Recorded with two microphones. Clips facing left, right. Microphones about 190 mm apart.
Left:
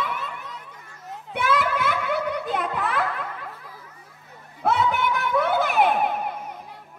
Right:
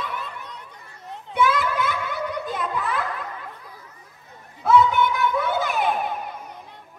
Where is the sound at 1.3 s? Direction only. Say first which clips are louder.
Right 2 dB; 60° left (ahead or behind).